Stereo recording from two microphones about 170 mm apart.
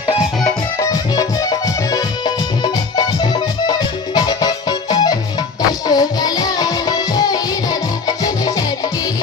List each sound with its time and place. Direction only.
0.4 s music: 20° left (ahead or behind)